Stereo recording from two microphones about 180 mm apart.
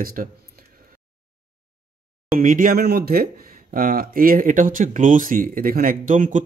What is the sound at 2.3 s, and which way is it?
Speech, 50° right (ahead or behind).